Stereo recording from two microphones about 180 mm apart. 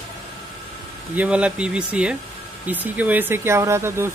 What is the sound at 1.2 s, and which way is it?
Speech, 5° right (ahead or behind).